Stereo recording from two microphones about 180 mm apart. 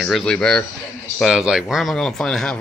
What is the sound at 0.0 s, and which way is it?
A man's voice, centre (ahead or behind).